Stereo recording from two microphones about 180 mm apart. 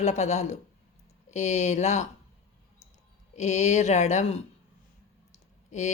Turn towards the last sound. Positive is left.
turn(degrees=40)  # may be behind; listen again after turning